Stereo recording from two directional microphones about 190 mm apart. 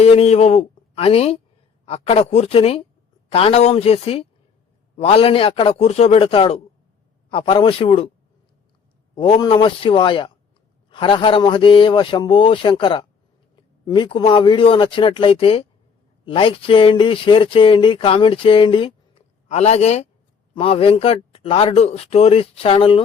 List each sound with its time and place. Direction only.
0.0 s a man's voice: 35° left (ahead or behind)
9.1 s speech: 25° left (ahead or behind)